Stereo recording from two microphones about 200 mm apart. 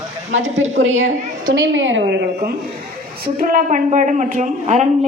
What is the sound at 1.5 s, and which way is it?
A woman's voice, 70° right (ahead or behind).